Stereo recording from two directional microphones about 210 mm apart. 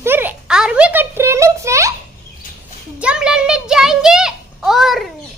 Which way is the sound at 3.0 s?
5° right (ahead or behind).